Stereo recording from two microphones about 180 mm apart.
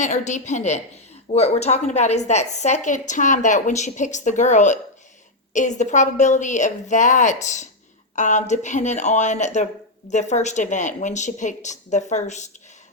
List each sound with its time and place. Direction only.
0.0 s a woman's voice: 40° left (ahead or behind)